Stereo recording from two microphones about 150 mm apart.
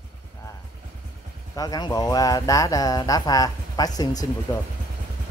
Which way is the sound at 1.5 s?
25° left (ahead or behind).